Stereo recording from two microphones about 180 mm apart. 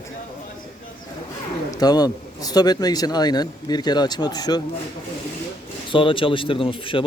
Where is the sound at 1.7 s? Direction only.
20° left (ahead or behind).